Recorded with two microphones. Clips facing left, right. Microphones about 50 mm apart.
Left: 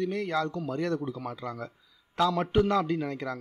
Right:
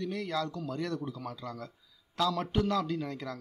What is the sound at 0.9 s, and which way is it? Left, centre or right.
A man's voice, left.